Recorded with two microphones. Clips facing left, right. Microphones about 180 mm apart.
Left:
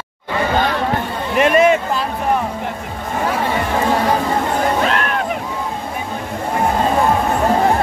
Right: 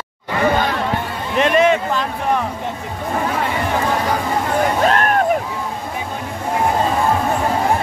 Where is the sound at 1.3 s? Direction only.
10° left (ahead or behind).